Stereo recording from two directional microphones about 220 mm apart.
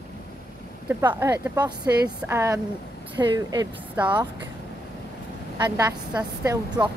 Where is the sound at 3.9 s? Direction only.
5° right (ahead or behind).